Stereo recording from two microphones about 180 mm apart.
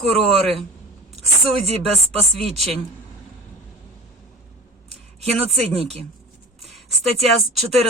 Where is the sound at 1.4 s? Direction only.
35° right (ahead or behind).